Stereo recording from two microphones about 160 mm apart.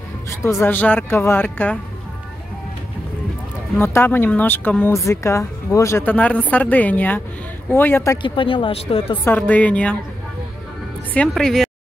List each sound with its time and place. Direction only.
0.4 s speech: 15° left (ahead or behind)
3.8 s speech: 15° left (ahead or behind)
8.2 s speech: 30° left (ahead or behind)
9.2 s speech: 10° left (ahead or behind)
11.1 s speech: 5° left (ahead or behind)